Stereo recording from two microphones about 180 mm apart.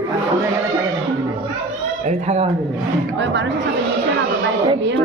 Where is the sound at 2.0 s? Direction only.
35° right (ahead or behind).